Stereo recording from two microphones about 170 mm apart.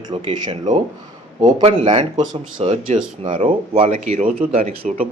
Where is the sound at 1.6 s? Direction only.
30° right (ahead or behind).